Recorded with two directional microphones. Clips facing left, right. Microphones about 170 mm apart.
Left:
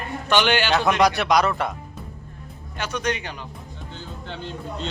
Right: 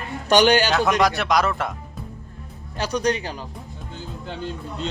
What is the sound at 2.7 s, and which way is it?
Speech, 35° right (ahead or behind).